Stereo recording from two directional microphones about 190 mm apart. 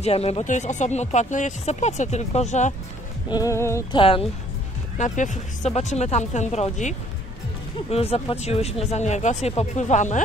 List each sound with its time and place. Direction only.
0.0 s speech: 35° left (ahead or behind)
3.3 s a sound: 20° left (ahead or behind)
3.9 s a woman's voice: 30° left (ahead or behind)
4.9 s speech: 40° left (ahead or behind)